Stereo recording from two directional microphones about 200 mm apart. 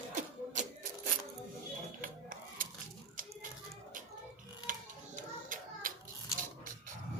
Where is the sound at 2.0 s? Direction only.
45° right (ahead or behind).